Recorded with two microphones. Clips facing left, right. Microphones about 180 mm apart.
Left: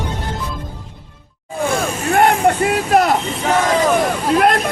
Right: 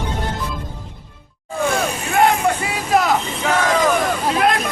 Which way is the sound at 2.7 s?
60° left (ahead or behind).